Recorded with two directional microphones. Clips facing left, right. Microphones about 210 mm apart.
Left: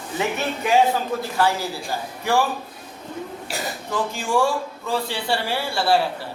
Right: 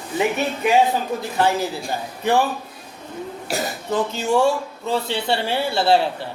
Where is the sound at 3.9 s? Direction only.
20° right (ahead or behind).